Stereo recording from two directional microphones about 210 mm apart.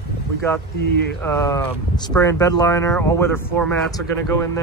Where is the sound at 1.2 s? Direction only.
10° left (ahead or behind).